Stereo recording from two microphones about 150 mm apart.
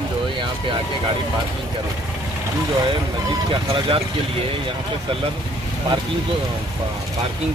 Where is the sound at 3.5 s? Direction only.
40° right (ahead or behind).